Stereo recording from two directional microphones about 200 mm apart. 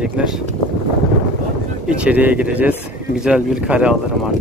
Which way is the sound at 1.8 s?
5° right (ahead or behind).